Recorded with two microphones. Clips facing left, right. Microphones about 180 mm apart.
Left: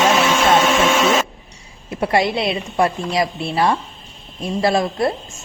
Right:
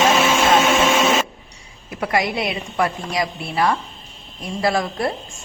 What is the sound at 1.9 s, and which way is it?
Speech, 30° left (ahead or behind).